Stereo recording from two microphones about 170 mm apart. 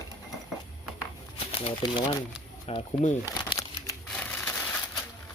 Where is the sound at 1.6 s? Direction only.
30° left (ahead or behind).